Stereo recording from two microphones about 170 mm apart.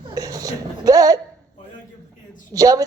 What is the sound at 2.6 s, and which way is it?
Speech, 20° right (ahead or behind).